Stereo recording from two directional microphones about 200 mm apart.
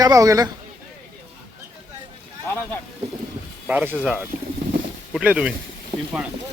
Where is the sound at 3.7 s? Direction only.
10° right (ahead or behind).